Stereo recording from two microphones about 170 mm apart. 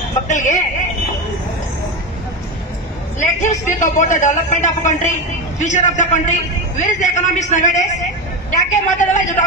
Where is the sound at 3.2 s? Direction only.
45° left (ahead or behind).